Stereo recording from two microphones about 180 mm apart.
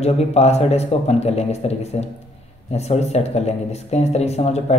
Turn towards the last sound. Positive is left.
turn(degrees=35)  # may be behind; listen again after turning